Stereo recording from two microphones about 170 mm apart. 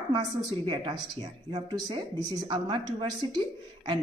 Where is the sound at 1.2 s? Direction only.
25° right (ahead or behind).